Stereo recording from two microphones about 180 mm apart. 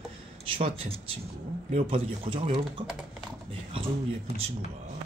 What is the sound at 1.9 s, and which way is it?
Speech, 30° right (ahead or behind).